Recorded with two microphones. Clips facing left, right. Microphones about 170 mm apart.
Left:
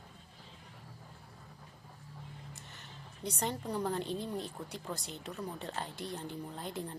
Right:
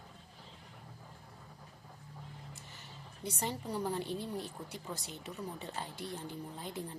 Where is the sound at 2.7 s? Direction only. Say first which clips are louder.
Even; 65° left (ahead or behind).